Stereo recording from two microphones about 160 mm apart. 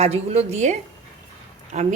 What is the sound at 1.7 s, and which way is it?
Speech, 45° right (ahead or behind).